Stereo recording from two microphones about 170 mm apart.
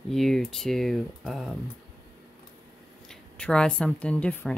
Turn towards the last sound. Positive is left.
turn(degrees=10)  # may be behind; listen again after turning